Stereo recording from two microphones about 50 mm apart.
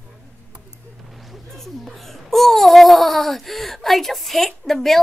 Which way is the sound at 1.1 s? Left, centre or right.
Centre.